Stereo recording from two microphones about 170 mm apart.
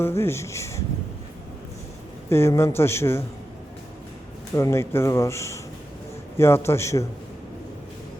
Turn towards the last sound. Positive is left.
turn(degrees=15)  # may be behind; listen again after turning